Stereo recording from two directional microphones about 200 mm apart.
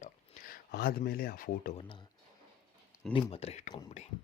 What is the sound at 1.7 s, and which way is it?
Speech, 25° left (ahead or behind).